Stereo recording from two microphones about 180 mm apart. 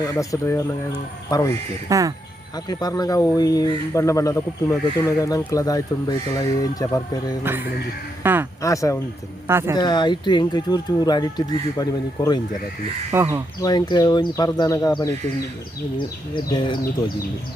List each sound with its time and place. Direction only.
0.0 s speech: 20° left (ahead or behind)
1.9 s speech: 20° right (ahead or behind)
2.6 s speech: 20° left (ahead or behind)
7.4 s speech: 10° right (ahead or behind)
8.6 s speech: 20° left (ahead or behind)
9.5 s speech: 15° right (ahead or behind)
9.7 s speech: 25° left (ahead or behind)
13.1 s speech: 15° right (ahead or behind)
13.6 s speech: 20° left (ahead or behind)